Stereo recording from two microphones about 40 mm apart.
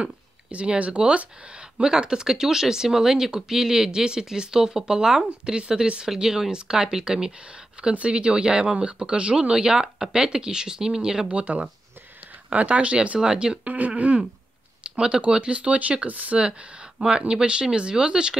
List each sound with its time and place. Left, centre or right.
0.5 s speech: right
7.9 s speech: right
11.2 s speech: right
13.2 s speech: centre
13.7 s speech: right
14.8 s speech: right
17.3 s speech: right